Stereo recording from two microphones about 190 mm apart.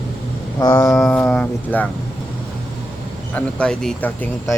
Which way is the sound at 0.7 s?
5° left (ahead or behind).